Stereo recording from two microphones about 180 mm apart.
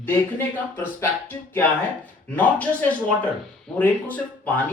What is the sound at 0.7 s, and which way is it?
Speech, 10° left (ahead or behind).